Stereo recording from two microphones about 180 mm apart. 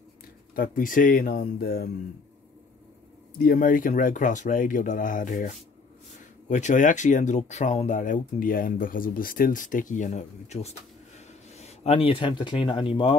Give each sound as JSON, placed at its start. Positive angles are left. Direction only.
{"t": 0.6, "sound": "speech", "side_deg": 50}
{"t": 3.4, "sound": "speech", "side_deg": 50}
{"t": 6.5, "sound": "speech", "side_deg": 45}